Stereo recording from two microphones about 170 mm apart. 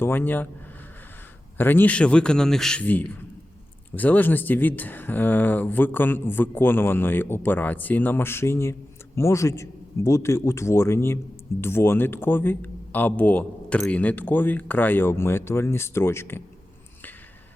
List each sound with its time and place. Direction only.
0.0 s speech: 10° left (ahead or behind)
1.5 s speech: 10° left (ahead or behind)